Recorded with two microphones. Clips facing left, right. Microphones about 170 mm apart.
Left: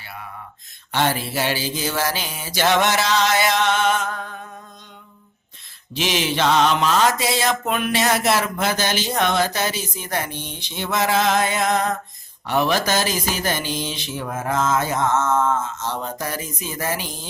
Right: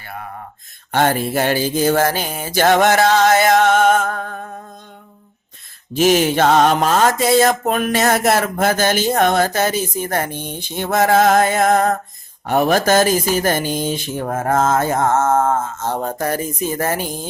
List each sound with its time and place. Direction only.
0.0 s a sound: 50° right (ahead or behind)
0.9 s mantra: 50° right (ahead or behind)
5.9 s mantra: 45° right (ahead or behind)